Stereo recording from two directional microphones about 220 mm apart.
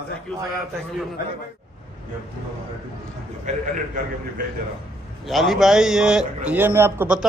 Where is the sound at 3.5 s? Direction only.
30° right (ahead or behind).